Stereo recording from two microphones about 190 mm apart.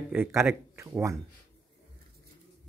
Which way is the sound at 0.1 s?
10° right (ahead or behind).